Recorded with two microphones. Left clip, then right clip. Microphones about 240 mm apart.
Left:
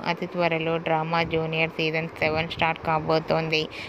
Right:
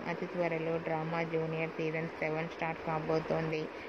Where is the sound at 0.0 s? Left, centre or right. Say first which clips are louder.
Left 10 dB; left.